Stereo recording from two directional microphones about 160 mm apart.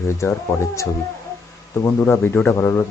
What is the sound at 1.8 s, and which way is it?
Speech, 15° left (ahead or behind).